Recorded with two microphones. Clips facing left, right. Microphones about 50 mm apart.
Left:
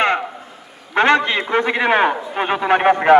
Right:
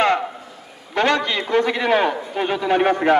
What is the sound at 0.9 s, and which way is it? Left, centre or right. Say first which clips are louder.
A man's voice: left 4 dB; left.